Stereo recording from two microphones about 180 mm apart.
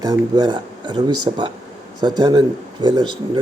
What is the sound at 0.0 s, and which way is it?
Speech, 20° right (ahead or behind).